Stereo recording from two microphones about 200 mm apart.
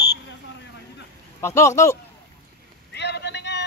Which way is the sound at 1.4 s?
15° left (ahead or behind).